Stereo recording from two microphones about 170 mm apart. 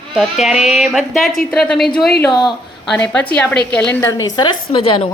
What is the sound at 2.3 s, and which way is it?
Speech, 25° left (ahead or behind).